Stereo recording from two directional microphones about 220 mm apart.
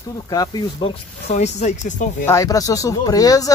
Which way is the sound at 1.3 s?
30° left (ahead or behind).